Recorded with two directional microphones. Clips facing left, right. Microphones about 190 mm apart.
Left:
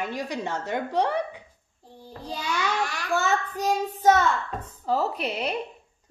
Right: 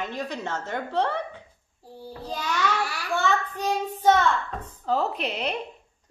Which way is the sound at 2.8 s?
5° right (ahead or behind).